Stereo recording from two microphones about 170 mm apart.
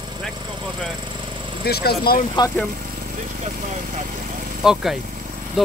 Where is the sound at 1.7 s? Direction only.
65° left (ahead or behind).